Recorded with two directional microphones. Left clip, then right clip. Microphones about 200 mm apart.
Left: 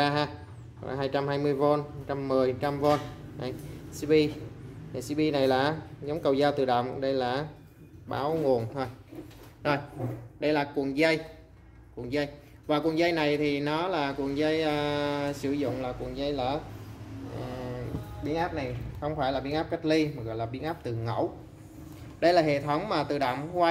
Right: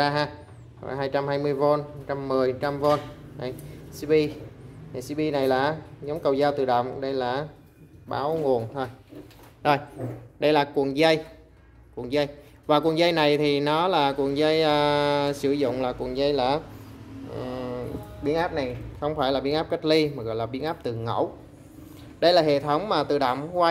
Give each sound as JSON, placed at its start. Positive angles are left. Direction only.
{"t": 0.0, "sound": "a man's voice", "side_deg": -5}
{"t": 9.6, "sound": "a man's voice", "side_deg": -20}
{"t": 18.2, "sound": "a man's voice", "side_deg": -40}
{"t": 21.0, "sound": "speech", "side_deg": -20}